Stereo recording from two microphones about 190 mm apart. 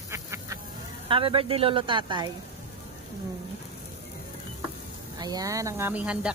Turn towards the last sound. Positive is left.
turn(degrees=-5)  # may be behind; listen again after turning